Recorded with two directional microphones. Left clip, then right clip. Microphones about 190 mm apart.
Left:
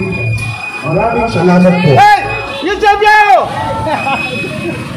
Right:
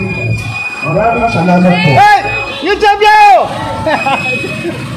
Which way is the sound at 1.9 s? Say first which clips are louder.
Right 1 dB; 15° right (ahead or behind).